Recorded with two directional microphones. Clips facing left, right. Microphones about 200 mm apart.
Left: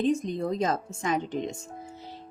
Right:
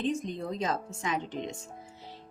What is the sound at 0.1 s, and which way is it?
A woman's voice, 40° left (ahead or behind).